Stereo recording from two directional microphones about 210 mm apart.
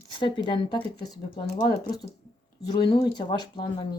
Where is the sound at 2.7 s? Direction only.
20° left (ahead or behind).